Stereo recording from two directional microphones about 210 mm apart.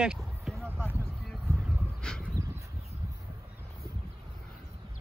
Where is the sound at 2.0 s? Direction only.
5° left (ahead or behind).